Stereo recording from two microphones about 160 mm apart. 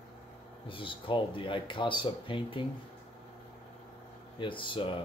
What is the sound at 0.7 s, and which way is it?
Speech, 30° left (ahead or behind).